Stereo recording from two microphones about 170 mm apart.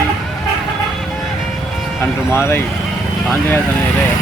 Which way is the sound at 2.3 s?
15° left (ahead or behind).